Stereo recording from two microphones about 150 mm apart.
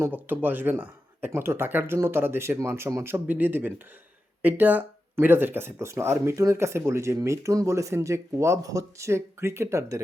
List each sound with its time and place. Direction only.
0.0 s speech: 15° right (ahead or behind)